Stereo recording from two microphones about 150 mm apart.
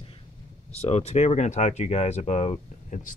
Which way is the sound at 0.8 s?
45° left (ahead or behind).